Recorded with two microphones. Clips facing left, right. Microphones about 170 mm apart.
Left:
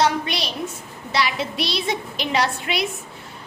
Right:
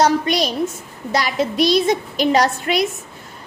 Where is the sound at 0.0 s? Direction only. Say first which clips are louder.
Right 5 dB; 45° right (ahead or behind).